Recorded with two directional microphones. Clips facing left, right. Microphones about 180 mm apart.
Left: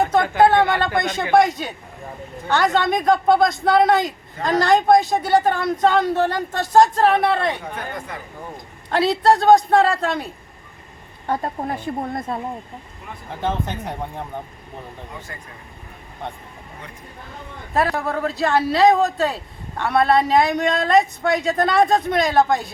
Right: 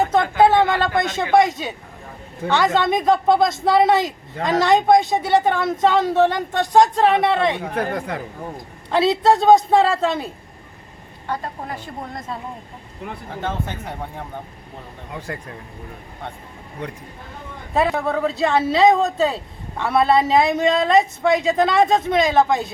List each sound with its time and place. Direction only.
0.1 s speech: centre (ahead or behind)
7.6 s speech: 65° right (ahead or behind)
9.0 s speech: centre (ahead or behind)
11.3 s speech: 45° left (ahead or behind)
13.4 s speech: 15° left (ahead or behind)
17.9 s speech: centre (ahead or behind)